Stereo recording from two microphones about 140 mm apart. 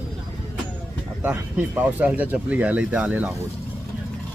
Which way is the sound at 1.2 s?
10° right (ahead or behind).